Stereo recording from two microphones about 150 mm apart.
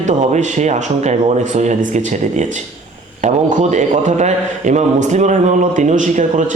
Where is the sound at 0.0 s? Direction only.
55° right (ahead or behind).